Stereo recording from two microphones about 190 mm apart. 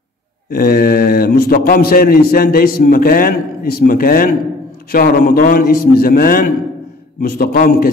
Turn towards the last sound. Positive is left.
turn(degrees=50)  # may be behind; listen again after turning